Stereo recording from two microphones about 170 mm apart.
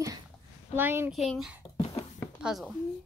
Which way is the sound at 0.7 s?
15° right (ahead or behind).